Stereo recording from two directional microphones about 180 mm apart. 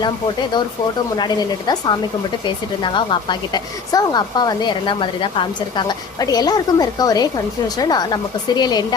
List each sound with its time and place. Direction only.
1.1 s a woman's voice: 20° left (ahead or behind)